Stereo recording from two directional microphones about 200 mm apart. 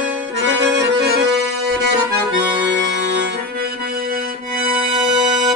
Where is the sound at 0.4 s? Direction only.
60° right (ahead or behind).